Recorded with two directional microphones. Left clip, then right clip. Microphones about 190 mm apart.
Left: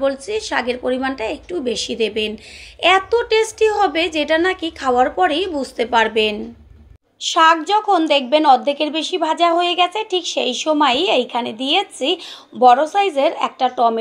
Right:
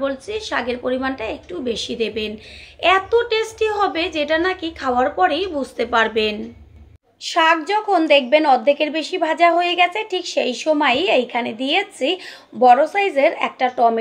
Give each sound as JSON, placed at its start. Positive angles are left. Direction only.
{"t": 0.0, "sound": "a woman's voice", "side_deg": 25}